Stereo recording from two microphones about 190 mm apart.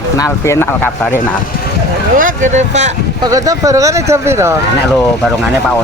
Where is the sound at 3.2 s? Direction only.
20° right (ahead or behind).